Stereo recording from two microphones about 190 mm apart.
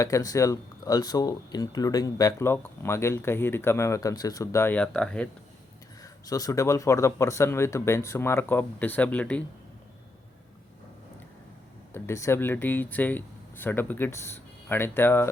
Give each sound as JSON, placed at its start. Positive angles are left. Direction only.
{"t": 0.0, "sound": "speech", "side_deg": 20}
{"t": 6.0, "sound": "speech", "side_deg": 20}
{"t": 11.9, "sound": "speech", "side_deg": 15}